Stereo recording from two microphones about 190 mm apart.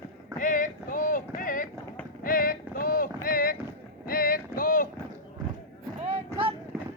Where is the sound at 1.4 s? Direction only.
45° left (ahead or behind).